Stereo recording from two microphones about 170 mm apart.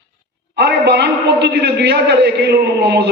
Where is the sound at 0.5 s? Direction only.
85° right.